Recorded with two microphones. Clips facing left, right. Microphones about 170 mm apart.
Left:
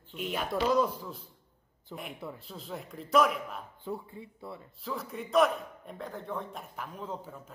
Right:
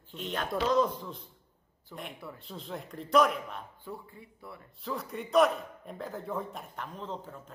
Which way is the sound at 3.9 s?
25° left (ahead or behind).